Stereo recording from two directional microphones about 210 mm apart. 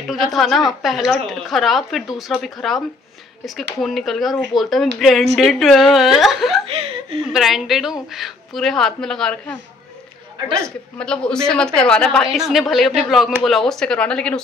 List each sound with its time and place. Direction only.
0.1 s a woman's voice: centre (ahead or behind)
3.8 s a woman's voice: centre (ahead or behind)
6.7 s speech: 30° right (ahead or behind)
7.3 s a woman's voice: centre (ahead or behind)
11.0 s a woman's voice: 5° left (ahead or behind)